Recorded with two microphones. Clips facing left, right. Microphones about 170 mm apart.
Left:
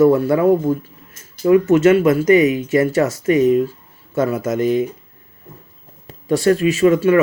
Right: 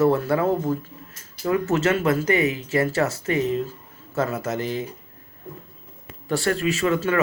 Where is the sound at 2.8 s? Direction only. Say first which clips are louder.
Left 5 dB; 35° right (ahead or behind).